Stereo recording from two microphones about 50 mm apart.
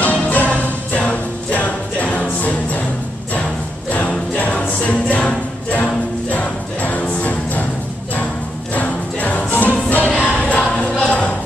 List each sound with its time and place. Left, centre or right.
0.0 s music: left
4.4 s music: left
8.7 s music: left
11.1 s a sound: centre